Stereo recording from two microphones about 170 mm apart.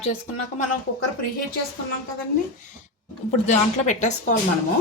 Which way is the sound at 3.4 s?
45° left (ahead or behind).